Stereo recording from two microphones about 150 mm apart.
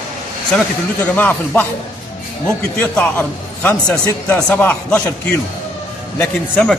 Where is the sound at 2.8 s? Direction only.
10° left (ahead or behind).